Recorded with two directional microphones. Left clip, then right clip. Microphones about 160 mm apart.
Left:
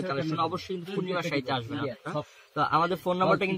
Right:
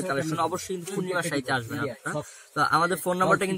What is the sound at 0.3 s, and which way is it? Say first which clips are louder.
A man's voice: right 2 dB; 10° right (ahead or behind).